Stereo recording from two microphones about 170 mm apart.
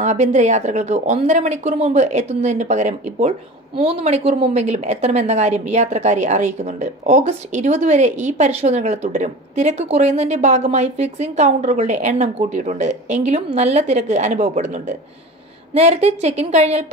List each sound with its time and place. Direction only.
0.0 s a woman's voice: 45° right (ahead or behind)